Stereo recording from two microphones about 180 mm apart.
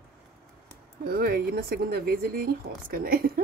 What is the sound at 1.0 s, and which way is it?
Speech, 55° right (ahead or behind).